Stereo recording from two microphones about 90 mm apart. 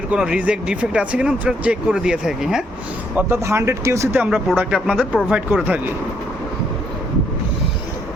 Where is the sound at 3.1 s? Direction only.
25° right (ahead or behind).